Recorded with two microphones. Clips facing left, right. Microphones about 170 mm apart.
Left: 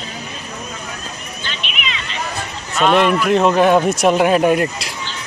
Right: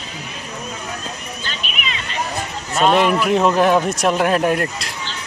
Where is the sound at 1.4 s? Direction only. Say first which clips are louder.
Left 3 dB; 40° right (ahead or behind).